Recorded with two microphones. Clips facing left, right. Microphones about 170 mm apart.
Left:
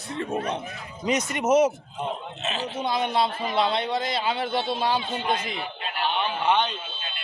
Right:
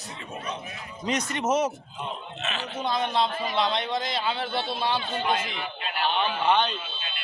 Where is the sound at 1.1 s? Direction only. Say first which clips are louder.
Left 4 dB; 10° left (ahead or behind).